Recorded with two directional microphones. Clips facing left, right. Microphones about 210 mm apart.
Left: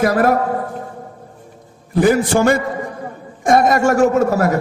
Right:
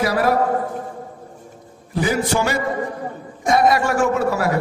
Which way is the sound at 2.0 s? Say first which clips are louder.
Left 6 dB; 50° left (ahead or behind).